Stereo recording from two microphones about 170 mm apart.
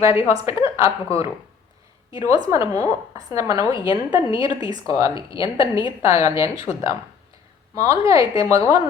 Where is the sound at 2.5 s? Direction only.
20° right (ahead or behind).